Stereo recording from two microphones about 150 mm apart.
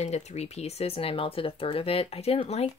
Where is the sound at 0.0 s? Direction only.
45° left (ahead or behind).